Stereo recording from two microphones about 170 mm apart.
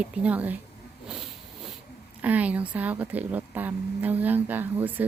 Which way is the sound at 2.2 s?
10° right (ahead or behind).